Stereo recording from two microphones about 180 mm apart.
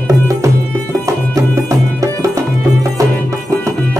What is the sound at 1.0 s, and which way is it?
Music, 15° right (ahead or behind).